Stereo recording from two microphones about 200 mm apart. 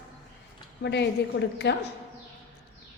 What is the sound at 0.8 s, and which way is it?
Speech, 60° left (ahead or behind).